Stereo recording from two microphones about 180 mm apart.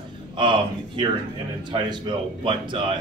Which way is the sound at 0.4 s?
25° right (ahead or behind).